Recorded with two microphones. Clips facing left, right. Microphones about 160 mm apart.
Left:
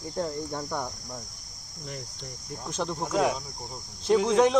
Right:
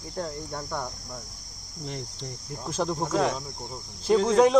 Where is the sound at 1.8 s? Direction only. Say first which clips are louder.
Right 3 dB; 25° right (ahead or behind).